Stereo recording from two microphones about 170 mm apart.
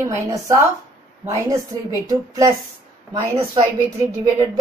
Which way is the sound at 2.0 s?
20° right (ahead or behind).